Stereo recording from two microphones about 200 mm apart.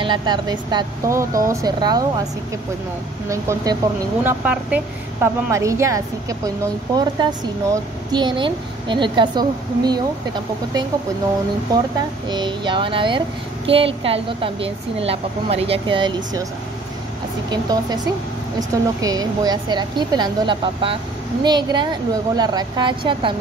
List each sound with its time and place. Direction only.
0.0 s speech: 20° right (ahead or behind)
3.3 s speech: 15° right (ahead or behind)
12.3 s speech: 20° right (ahead or behind)
17.5 s speech: 20° right (ahead or behind)